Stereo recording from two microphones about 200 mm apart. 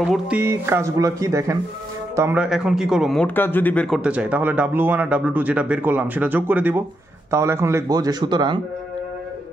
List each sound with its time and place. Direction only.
0.1 s speech: 10° right (ahead or behind)